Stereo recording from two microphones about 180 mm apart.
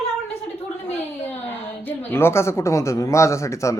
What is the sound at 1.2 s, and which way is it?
A woman's voice, 10° left (ahead or behind).